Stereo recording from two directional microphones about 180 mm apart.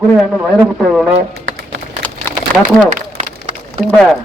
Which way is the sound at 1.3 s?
70° right (ahead or behind).